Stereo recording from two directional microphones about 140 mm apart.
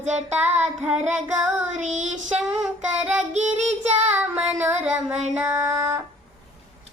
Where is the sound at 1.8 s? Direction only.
55° right (ahead or behind).